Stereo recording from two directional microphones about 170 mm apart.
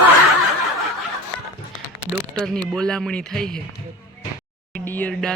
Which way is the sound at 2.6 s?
5° left (ahead or behind).